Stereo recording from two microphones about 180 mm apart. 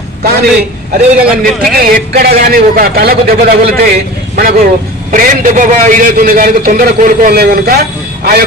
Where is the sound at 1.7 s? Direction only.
55° right (ahead or behind).